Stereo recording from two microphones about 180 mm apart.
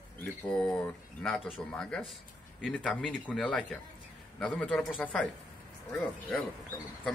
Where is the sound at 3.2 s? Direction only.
5° left (ahead or behind).